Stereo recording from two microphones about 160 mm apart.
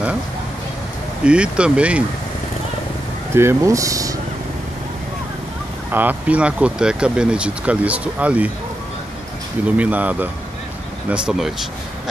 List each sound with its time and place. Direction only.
1.2 s speech: 5° right (ahead or behind)
3.3 s speech: 15° right (ahead or behind)
5.9 s speech: 10° right (ahead or behind)
9.8 s speech: 10° right (ahead or behind)